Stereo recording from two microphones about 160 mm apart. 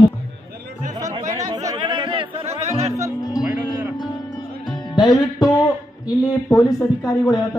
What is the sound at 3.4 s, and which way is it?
Music, 10° right (ahead or behind).